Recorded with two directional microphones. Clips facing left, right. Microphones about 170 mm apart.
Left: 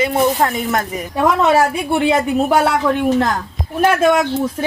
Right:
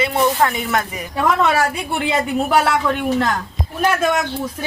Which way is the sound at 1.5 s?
25° left (ahead or behind).